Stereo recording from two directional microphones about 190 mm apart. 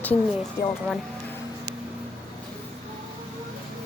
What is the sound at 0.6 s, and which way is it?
Speech, 55° left (ahead or behind).